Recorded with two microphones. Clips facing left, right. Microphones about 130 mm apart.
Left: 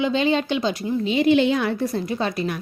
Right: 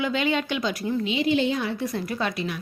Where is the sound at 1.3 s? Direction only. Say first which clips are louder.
Left 6 dB; 70° left (ahead or behind).